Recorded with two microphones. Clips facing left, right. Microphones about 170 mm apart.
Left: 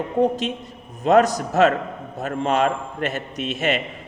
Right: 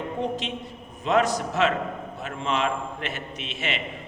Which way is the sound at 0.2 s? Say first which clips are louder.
Left 12 dB; 40° left (ahead or behind).